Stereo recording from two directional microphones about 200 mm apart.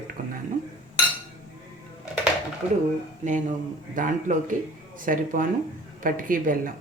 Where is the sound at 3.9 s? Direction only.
40° right (ahead or behind).